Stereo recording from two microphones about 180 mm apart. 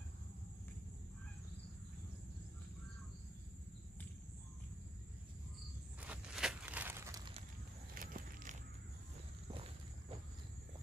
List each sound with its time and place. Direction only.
5.9 s a sound: 5° right (ahead or behind)
7.9 s walk: 50° right (ahead or behind)
9.5 s walk: 30° right (ahead or behind)